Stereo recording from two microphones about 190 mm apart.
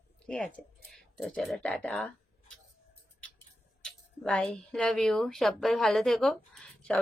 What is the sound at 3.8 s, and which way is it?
Speech, 5° left (ahead or behind).